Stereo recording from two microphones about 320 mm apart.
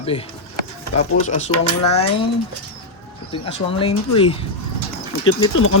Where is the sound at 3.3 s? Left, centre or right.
Centre.